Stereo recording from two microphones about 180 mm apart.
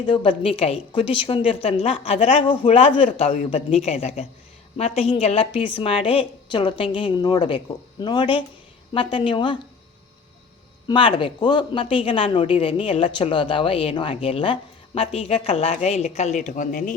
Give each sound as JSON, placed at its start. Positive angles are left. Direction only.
{"t": 0.0, "sound": "a woman's voice", "side_deg": 30}
{"t": 10.8, "sound": "speech", "side_deg": 25}